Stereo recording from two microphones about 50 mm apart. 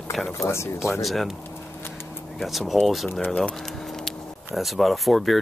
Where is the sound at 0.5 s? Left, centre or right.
Left.